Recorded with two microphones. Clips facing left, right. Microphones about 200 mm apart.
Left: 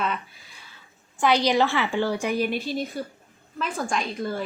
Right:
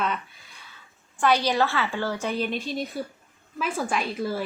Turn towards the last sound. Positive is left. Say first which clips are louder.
# even
turn(degrees=-5)  # may be behind; listen again after turning